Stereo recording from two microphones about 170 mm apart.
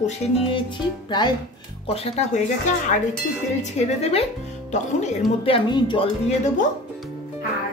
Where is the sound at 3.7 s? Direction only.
40° left (ahead or behind).